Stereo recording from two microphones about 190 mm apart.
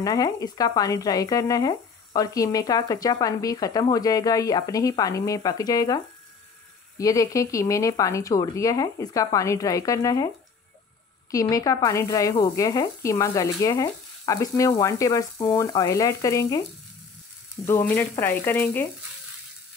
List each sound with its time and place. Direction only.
0.0 s speech: 20° left (ahead or behind)
7.0 s speech: 20° left (ahead or behind)
11.3 s speech: 20° left (ahead or behind)
17.6 s speech: 10° left (ahead or behind)